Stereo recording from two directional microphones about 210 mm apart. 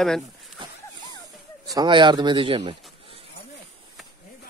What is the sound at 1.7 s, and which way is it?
A man's voice, 20° right (ahead or behind).